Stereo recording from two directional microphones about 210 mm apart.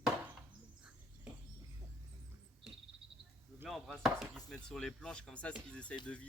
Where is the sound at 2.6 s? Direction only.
5° right (ahead or behind).